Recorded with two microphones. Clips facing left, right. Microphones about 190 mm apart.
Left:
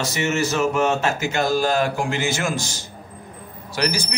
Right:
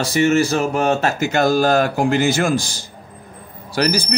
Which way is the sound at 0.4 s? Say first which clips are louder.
Right 2 dB; 35° right (ahead or behind).